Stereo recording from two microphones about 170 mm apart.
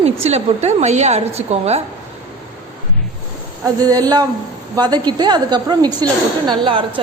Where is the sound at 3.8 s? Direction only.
25° right (ahead or behind).